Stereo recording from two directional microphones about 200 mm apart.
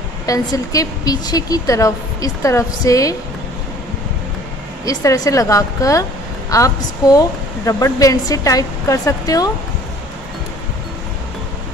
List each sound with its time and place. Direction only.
0.3 s speech: 20° left (ahead or behind)
4.8 s speech: 20° left (ahead or behind)